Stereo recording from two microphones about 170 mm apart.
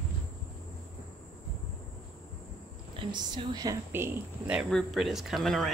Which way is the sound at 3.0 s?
25° right (ahead or behind).